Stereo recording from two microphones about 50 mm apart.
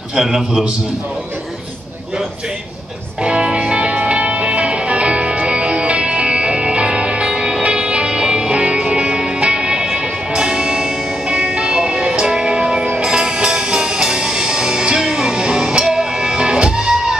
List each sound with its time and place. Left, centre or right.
0.1 s a man's voice: centre
3.3 s music: right